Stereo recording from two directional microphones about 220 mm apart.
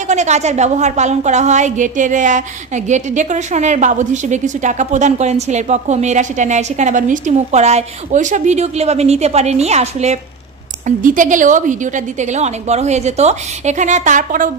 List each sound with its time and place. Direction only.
0.0 s a woman's voice: 30° right (ahead or behind)